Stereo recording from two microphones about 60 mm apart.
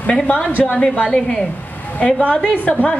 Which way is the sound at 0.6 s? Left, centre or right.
Left.